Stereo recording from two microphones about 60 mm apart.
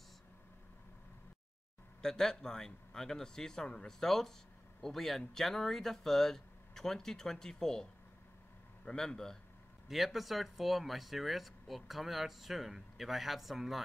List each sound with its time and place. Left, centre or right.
2.0 s speech: centre
8.8 s speech: centre
9.8 s speech: centre